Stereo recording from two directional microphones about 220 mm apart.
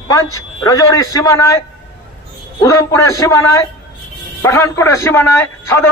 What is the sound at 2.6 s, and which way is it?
A man's voice, 15° left (ahead or behind).